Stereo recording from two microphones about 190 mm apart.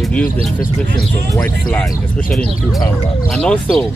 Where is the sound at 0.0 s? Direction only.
5° left (ahead or behind).